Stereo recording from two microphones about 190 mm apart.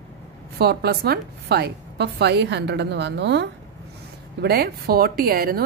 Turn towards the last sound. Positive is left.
turn(degrees=-55)  # may be behind; listen again after turning